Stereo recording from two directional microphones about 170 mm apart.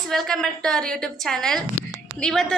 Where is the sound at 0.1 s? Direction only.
5° left (ahead or behind).